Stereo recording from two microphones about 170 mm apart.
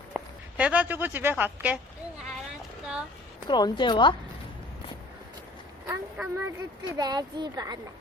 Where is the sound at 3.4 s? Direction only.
25° left (ahead or behind).